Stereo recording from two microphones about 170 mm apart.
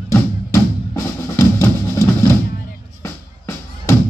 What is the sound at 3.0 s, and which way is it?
Music, 15° left (ahead or behind).